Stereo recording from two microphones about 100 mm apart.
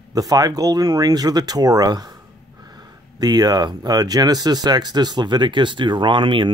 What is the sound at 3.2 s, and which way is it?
Speech, 40° right (ahead or behind).